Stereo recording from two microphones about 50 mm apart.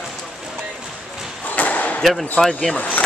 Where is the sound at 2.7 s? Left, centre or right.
Left.